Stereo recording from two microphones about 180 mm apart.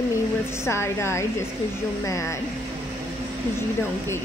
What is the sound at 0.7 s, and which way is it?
Speech, 15° left (ahead or behind).